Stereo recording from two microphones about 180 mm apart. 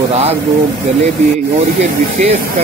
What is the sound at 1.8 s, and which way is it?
Speech, 40° right (ahead or behind).